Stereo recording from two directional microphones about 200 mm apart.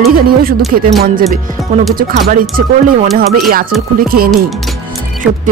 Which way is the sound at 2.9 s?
45° right (ahead or behind).